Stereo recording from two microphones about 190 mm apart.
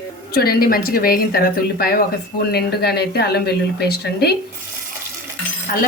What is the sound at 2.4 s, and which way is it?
Speech, 55° left (ahead or behind).